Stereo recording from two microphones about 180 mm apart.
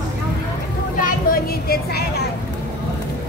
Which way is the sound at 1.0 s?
55° left (ahead or behind).